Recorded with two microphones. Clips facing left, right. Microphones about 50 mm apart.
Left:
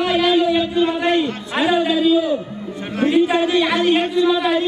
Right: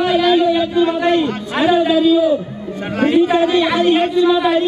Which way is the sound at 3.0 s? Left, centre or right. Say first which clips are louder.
Right 2 dB; right.